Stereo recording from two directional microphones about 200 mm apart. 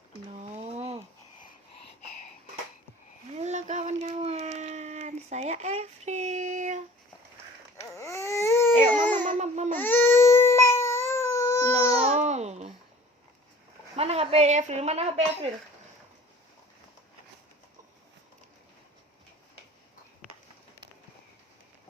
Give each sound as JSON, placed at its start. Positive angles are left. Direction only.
{"t": 0.5, "sound": "a sound", "side_deg": -30}
{"t": 3.3, "sound": "a sound", "side_deg": -35}
{"t": 7.8, "sound": "baby cry", "side_deg": 15}
{"t": 9.2, "sound": "babbling", "side_deg": -35}
{"t": 9.7, "sound": "baby cry", "side_deg": 10}
{"t": 11.7, "sound": "baby cry", "side_deg": -30}
{"t": 13.9, "sound": "a woman's voice", "side_deg": -30}